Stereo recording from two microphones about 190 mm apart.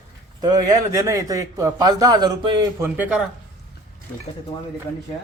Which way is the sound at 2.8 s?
5° right (ahead or behind).